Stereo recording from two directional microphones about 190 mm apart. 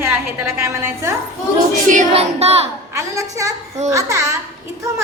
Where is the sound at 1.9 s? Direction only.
40° right (ahead or behind).